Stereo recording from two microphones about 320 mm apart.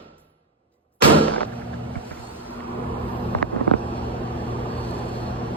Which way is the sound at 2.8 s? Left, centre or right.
Centre.